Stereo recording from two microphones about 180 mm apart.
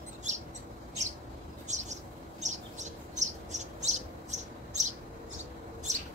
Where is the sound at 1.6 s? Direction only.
40° right (ahead or behind).